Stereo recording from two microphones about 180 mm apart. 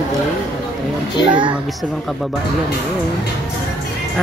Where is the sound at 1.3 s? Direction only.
25° right (ahead or behind).